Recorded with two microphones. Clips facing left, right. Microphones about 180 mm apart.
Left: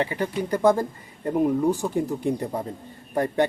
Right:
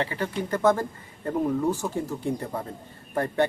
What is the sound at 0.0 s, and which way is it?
Speech, 15° left (ahead or behind).